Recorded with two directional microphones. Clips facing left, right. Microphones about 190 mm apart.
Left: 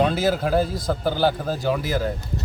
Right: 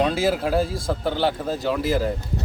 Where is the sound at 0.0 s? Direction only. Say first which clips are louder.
Even; centre (ahead or behind).